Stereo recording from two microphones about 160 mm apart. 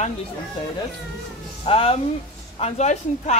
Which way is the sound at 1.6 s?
40° left (ahead or behind).